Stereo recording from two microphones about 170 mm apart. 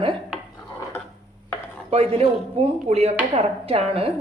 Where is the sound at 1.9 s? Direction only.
35° right (ahead or behind).